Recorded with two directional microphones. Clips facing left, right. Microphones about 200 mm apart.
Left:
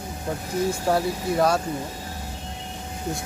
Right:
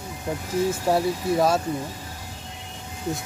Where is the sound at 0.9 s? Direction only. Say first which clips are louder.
Right 2 dB; centre (ahead or behind).